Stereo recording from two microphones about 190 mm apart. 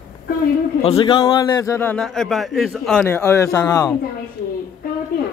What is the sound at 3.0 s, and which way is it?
Speech, 15° left (ahead or behind).